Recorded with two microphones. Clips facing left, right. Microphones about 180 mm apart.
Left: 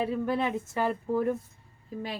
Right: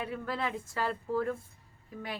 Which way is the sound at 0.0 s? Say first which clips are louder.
Left 7 dB; 20° left (ahead or behind).